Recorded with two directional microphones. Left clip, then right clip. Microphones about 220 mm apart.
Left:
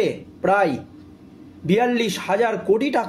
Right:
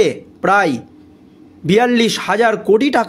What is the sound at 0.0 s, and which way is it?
A man's voice, 45° right (ahead or behind).